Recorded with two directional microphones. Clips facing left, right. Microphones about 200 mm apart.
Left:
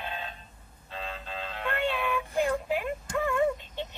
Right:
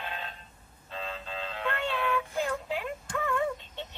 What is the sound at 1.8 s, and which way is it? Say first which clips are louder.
Child singing: left 2 dB; 15° left (ahead or behind).